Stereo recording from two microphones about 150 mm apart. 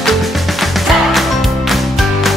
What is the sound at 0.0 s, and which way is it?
Music, centre (ahead or behind).